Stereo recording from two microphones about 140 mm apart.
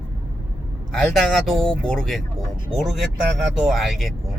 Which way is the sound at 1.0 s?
5° left (ahead or behind).